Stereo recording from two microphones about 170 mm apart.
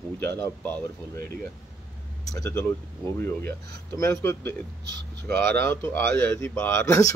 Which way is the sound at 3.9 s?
15° left (ahead or behind).